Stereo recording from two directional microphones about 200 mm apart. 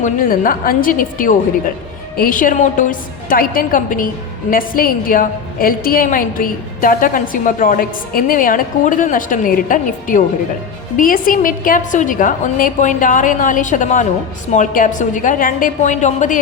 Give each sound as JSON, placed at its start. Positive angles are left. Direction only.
{"t": 0.0, "sound": "a woman's voice", "side_deg": 45}